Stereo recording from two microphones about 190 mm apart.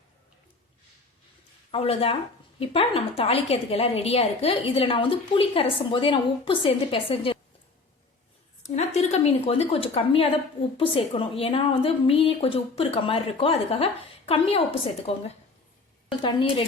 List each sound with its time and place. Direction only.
1.7 s a woman's voice: 30° left (ahead or behind)
8.6 s a woman's voice: 35° left (ahead or behind)